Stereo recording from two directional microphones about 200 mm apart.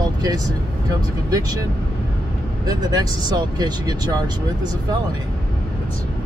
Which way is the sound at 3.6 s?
20° right (ahead or behind).